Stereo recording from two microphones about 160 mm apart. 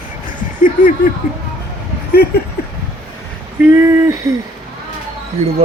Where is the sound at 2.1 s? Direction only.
75° left (ahead or behind).